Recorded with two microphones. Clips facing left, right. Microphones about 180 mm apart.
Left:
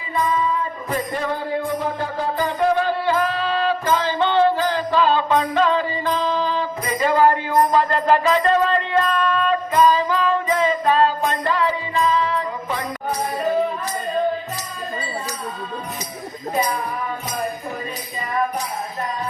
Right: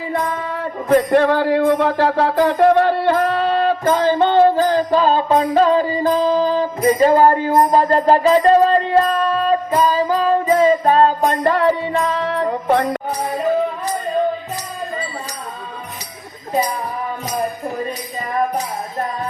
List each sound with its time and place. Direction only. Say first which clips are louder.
0.1 s music: left 3 dB; 75° right (ahead or behind); by 13.0 s 60° right (ahead or behind)